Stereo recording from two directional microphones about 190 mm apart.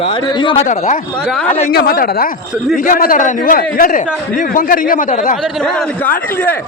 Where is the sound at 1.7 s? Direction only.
50° left (ahead or behind).